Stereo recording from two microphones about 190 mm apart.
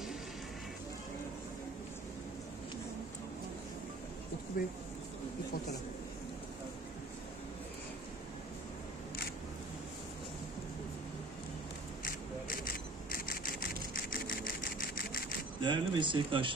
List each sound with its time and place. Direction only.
4.6 s speech: 45° left (ahead or behind)
12.0 s a sound: 50° left (ahead or behind)
14.2 s sewing machine: 50° left (ahead or behind)
15.6 s speech: 25° right (ahead or behind)